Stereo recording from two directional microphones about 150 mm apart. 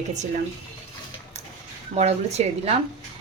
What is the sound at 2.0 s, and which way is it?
Speech, 45° right (ahead or behind).